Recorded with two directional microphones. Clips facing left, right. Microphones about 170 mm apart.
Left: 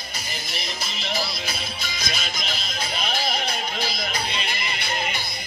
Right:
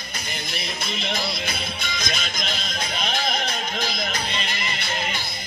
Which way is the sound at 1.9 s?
50° right (ahead or behind).